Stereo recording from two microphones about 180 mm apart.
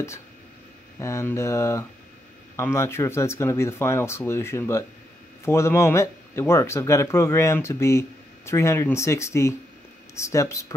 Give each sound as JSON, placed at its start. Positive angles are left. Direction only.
{"t": 0.9, "sound": "speech", "side_deg": 15}